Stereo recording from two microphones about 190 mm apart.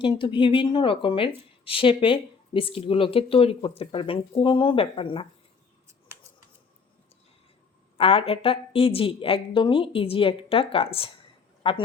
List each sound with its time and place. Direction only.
0.0 s speech: 25° left (ahead or behind)
7.9 s speech: 30° left (ahead or behind)